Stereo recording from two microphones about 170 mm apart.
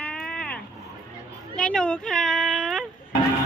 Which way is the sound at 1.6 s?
5° left (ahead or behind).